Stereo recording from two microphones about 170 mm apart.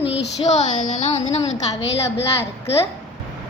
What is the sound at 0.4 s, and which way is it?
A woman's voice, 45° left (ahead or behind).